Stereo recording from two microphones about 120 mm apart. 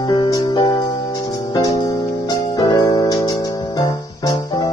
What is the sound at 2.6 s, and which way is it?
Music, 40° left (ahead or behind).